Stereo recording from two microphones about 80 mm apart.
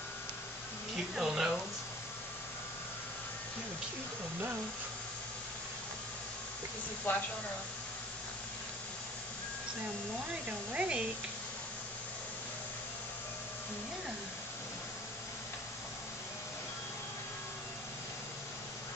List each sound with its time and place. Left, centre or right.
0.9 s speech: centre
7.1 s speech: left
10.7 s speech: centre